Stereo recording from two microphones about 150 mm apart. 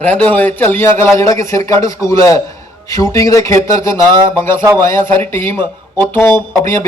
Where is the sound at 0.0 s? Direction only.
10° left (ahead or behind).